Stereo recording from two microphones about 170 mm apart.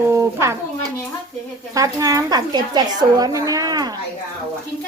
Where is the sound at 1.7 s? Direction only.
20° right (ahead or behind).